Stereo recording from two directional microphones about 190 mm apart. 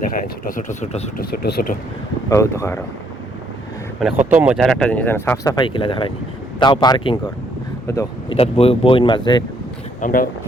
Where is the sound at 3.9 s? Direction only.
Centre (ahead or behind); by 7.2 s 25° left (ahead or behind).